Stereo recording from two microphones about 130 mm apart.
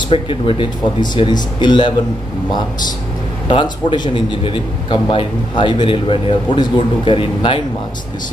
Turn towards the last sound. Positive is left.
turn(degrees=40)  # may be behind; listen again after turning